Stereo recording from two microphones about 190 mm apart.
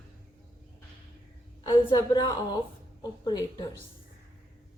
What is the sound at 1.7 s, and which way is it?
A woman's voice, 20° left (ahead or behind).